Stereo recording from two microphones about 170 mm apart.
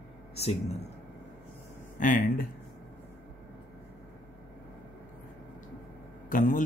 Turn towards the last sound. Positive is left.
turn(degrees=50)  # may be behind; listen again after turning